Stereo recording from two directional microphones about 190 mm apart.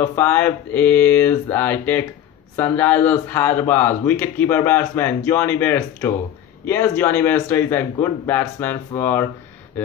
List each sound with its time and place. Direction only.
0.0 s speech: 10° left (ahead or behind)